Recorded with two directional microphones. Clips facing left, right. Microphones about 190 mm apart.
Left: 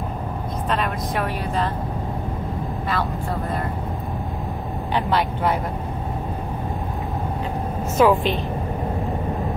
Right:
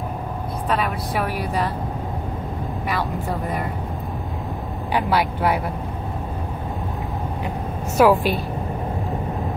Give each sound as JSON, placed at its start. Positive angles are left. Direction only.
{"t": 0.7, "sound": "speech", "side_deg": -10}
{"t": 2.9, "sound": "speech", "side_deg": -15}
{"t": 4.9, "sound": "speech", "side_deg": -10}
{"t": 8.0, "sound": "speech", "side_deg": -10}